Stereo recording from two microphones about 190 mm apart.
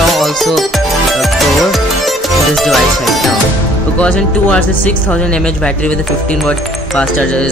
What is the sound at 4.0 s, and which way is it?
Speech, 5° left (ahead or behind).